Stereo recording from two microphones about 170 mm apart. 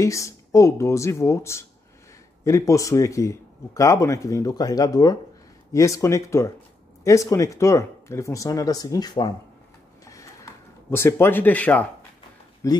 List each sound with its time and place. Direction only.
0.0 s a man's voice: 20° left (ahead or behind)
10.0 s a sound: 20° left (ahead or behind)
12.6 s a man's voice: 20° left (ahead or behind)